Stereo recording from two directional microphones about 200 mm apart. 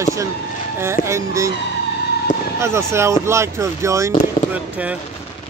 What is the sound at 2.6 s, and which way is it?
Speech, 15° right (ahead or behind).